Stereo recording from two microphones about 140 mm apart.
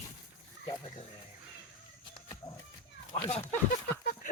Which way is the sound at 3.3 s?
55° left (ahead or behind).